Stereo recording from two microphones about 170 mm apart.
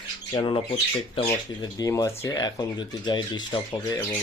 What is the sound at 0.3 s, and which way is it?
Speech, 30° left (ahead or behind).